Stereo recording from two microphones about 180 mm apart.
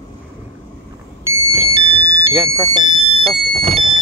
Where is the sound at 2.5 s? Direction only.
15° right (ahead or behind).